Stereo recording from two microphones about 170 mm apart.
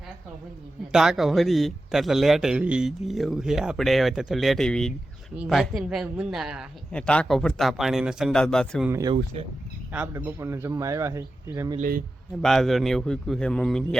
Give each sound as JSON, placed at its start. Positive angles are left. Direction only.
{"t": 0.9, "sound": "a man's voice", "side_deg": 0}
{"t": 8.9, "sound": "speech", "side_deg": -20}
{"t": 11.8, "sound": "a man's voice", "side_deg": -55}
{"t": 12.4, "sound": "a man's voice", "side_deg": 0}